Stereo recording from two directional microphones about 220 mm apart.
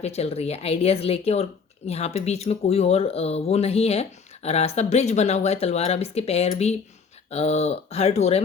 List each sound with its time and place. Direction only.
0.0 s speech: 30° left (ahead or behind)